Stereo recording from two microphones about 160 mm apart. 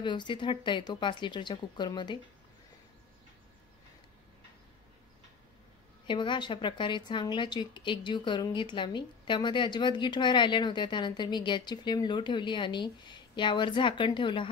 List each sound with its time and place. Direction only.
0.0 s a woman's voice: 30° left (ahead or behind)
6.0 s a woman's voice: 30° left (ahead or behind)